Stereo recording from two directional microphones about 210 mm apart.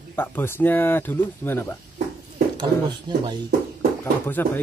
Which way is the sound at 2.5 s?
20° right (ahead or behind).